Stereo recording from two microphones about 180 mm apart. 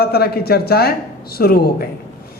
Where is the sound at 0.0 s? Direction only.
60° left (ahead or behind).